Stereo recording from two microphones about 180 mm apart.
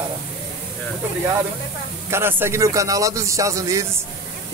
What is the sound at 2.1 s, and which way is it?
Speech, 15° right (ahead or behind).